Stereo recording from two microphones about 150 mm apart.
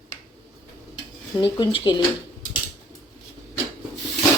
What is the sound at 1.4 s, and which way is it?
Speech, 35° left (ahead or behind).